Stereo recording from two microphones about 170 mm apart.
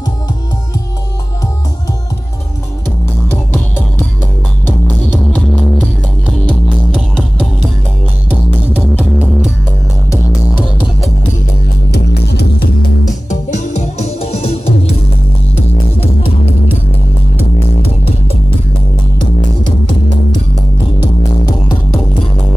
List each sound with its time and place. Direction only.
3.3 s music: 10° left (ahead or behind)
11.9 s music: 75° left (ahead or behind)
13.3 s music: 45° left (ahead or behind)